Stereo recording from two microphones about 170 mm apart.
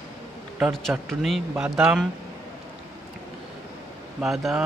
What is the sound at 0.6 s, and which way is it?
Speech, 10° right (ahead or behind).